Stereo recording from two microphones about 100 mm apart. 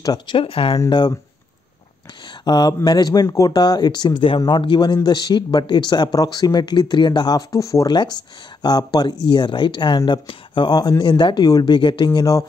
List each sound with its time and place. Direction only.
0.3 s speech: 60° left (ahead or behind)
0.8 s speech: 50° left (ahead or behind)
2.2 s speech: 45° left (ahead or behind)
7.9 s speech: 45° left (ahead or behind)